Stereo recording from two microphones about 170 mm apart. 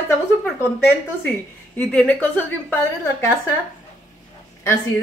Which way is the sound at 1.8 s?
5° left (ahead or behind).